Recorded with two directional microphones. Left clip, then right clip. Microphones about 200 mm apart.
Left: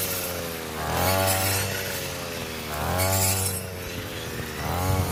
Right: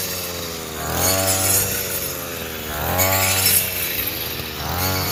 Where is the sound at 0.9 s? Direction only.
50° right (ahead or behind).